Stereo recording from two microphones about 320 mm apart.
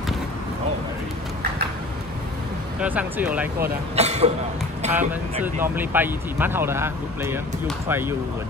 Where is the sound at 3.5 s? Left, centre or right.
Right.